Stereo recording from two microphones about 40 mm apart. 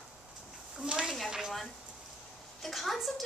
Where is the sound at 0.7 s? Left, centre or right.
Right.